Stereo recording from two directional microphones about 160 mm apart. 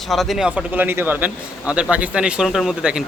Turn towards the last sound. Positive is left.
turn(degrees=-5)  # may be behind; listen again after turning